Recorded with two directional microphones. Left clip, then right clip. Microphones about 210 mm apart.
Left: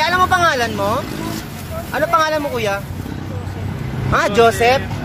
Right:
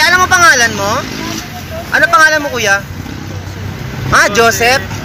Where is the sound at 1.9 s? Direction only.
5° left (ahead or behind).